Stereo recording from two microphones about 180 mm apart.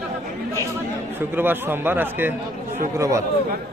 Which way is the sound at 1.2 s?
10° right (ahead or behind).